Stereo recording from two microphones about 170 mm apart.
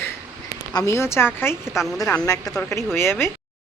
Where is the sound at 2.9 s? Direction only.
15° left (ahead or behind).